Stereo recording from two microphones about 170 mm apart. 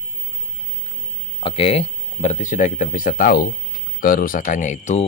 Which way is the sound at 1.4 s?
35° left (ahead or behind).